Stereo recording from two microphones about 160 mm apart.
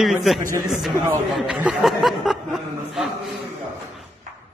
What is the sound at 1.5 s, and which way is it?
Speech, 5° right (ahead or behind).